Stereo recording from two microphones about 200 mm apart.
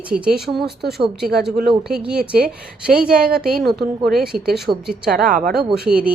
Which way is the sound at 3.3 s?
50° right (ahead or behind).